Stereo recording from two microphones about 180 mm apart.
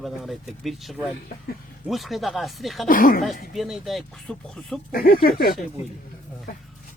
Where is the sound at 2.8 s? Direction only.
50° left (ahead or behind).